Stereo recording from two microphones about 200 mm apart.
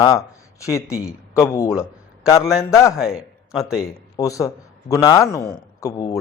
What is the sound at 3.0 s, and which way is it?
Speech, centre (ahead or behind).